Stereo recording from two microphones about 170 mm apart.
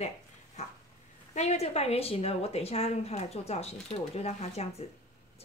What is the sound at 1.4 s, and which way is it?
A woman's voice, 40° left (ahead or behind).